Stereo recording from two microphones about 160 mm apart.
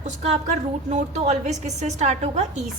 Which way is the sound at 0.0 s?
45° right (ahead or behind).